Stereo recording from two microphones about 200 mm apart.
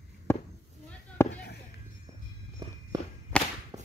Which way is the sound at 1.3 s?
55° left (ahead or behind).